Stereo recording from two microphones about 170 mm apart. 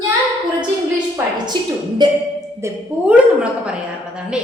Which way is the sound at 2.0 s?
25° right (ahead or behind).